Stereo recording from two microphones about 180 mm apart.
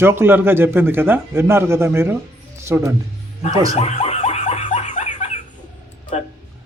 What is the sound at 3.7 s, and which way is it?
Laughter, 35° left (ahead or behind).